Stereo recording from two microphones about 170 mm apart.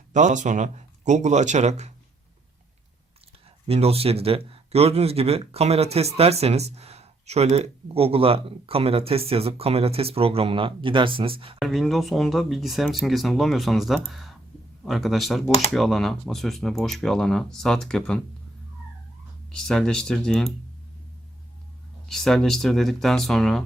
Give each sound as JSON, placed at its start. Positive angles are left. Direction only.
{"t": 0.1, "sound": "speech", "side_deg": -45}
{"t": 3.7, "sound": "speech", "side_deg": -35}
{"t": 11.6, "sound": "speech", "side_deg": 0}
{"t": 19.5, "sound": "speech", "side_deg": 5}
{"t": 22.1, "sound": "speech", "side_deg": 0}